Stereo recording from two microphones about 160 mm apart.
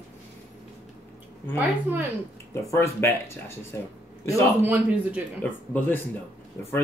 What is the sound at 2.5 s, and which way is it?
Speech, 15° left (ahead or behind).